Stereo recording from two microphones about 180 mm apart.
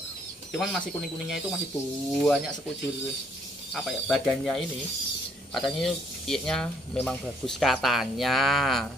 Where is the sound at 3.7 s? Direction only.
Centre (ahead or behind).